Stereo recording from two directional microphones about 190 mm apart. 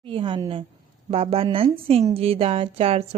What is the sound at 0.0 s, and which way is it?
A woman's voice, 25° right (ahead or behind).